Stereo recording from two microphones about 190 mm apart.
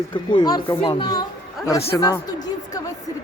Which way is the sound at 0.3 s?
25° left (ahead or behind).